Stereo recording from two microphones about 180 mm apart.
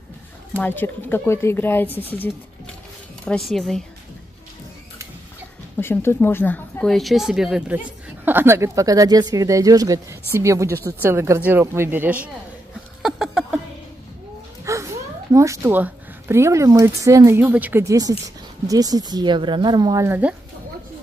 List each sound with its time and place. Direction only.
0.6 s a woman's voice: 10° left (ahead or behind)
5.8 s speech: 10° left (ahead or behind); by 12.3 s 10° right (ahead or behind)
13.0 s a sound: centre (ahead or behind)
14.6 s a woman's voice: 15° right (ahead or behind)